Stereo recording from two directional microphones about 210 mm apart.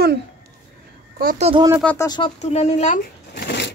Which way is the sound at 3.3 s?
50° left (ahead or behind).